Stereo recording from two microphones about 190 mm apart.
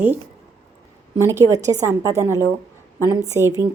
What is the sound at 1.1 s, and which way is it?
A woman's voice, 15° right (ahead or behind).